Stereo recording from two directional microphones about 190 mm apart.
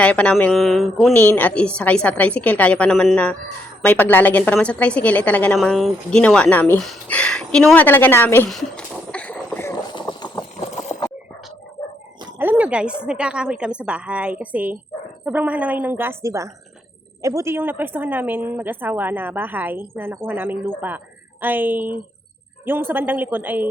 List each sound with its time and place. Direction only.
0.0 s a woman's voice: 5° left (ahead or behind)
9.9 s clip-clop: 25° left (ahead or behind)
12.4 s a sound: 10° right (ahead or behind)
13.1 s a woman's voice: 5° right (ahead or behind)